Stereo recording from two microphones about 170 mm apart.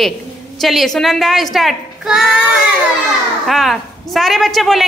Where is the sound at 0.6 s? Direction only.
Centre (ahead or behind).